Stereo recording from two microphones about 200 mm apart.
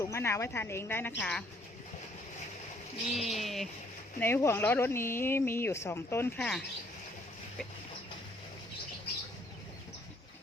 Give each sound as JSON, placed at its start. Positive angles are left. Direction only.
{"t": 0.0, "sound": "speech", "side_deg": 15}
{"t": 3.2, "sound": "speech", "side_deg": 0}
{"t": 4.2, "sound": "speech", "side_deg": 10}